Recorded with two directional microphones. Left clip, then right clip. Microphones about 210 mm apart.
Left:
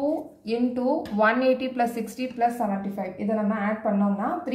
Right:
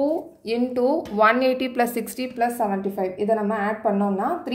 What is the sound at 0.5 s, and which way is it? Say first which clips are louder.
A woman's voice: right 4 dB; 50° right (ahead or behind).